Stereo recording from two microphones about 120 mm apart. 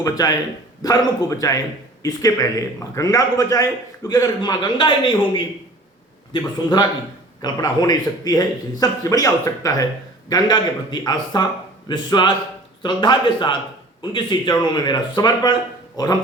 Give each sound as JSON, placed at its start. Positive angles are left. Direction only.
{"t": 0.0, "sound": "a man's voice", "side_deg": 30}